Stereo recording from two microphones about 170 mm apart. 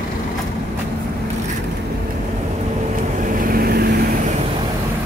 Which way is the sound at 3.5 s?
65° right (ahead or behind).